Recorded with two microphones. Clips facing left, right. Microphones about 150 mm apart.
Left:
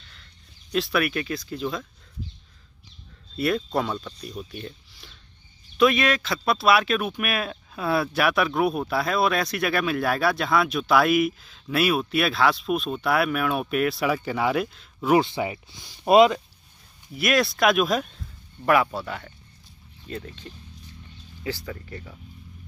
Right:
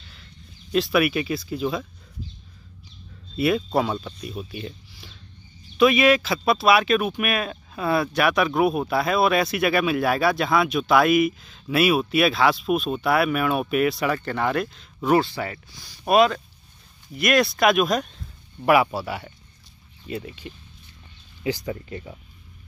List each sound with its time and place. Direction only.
0.1 s speech: 5° right (ahead or behind)
3.3 s speech: 5° right (ahead or behind)
15.1 s speech: 20° left (ahead or behind)
17.1 s speech: centre (ahead or behind)
18.6 s speech: 10° right (ahead or behind)